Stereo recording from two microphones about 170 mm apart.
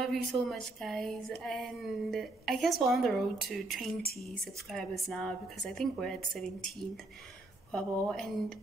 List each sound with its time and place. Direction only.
0.0 s a woman's voice: centre (ahead or behind)
7.7 s a woman's voice: 5° left (ahead or behind)